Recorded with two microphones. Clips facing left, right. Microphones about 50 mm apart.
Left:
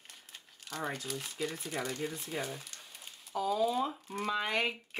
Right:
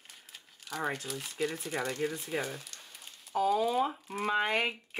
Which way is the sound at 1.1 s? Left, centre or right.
Centre.